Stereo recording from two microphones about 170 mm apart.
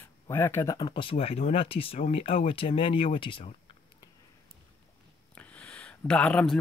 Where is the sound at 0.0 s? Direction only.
15° left (ahead or behind); by 3.5 s 30° left (ahead or behind).